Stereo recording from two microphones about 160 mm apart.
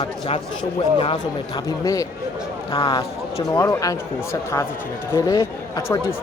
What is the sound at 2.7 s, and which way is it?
Speech, 35° left (ahead or behind).